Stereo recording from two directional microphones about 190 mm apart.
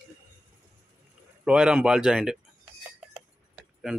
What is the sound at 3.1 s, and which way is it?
Tick-tock, centre (ahead or behind).